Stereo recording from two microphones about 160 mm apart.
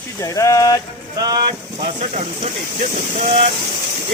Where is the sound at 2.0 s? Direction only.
50° right (ahead or behind).